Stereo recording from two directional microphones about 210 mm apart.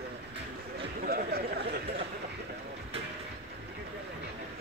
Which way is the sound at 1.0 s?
45° right (ahead or behind).